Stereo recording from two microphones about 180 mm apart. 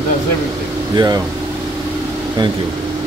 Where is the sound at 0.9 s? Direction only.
20° right (ahead or behind).